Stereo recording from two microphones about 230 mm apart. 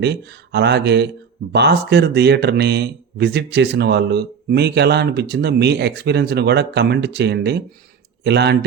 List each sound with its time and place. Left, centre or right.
0.0 s speech: right